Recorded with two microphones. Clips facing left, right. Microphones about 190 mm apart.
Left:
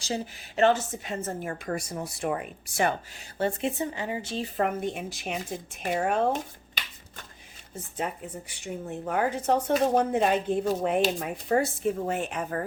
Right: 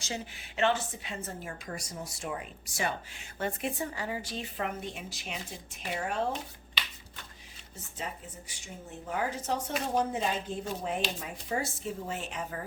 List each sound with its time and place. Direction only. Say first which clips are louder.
0.0 s a woman's voice: left 6 dB; 40° left (ahead or behind); by 2.9 s 55° left (ahead or behind)
3.3 s speech: left 6 dB; 30° left (ahead or behind)
4.5 s speech: left 9 dB; 50° left (ahead or behind)
7.9 s a woman's voice: left 8 dB; 60° left (ahead or behind)